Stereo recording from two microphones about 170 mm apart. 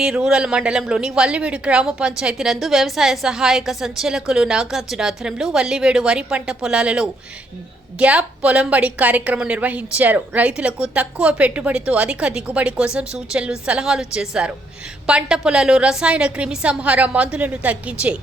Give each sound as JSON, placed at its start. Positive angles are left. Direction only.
{"t": 0.0, "sound": "a woman's voice", "side_deg": -5}